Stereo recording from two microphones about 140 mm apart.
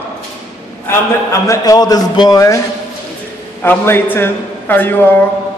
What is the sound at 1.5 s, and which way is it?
A man's voice, 25° left (ahead or behind).